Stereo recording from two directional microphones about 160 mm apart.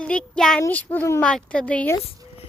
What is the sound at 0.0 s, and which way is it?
A woman's voice, 5° left (ahead or behind).